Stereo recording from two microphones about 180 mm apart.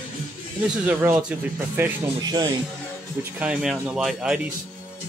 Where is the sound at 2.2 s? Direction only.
20° right (ahead or behind).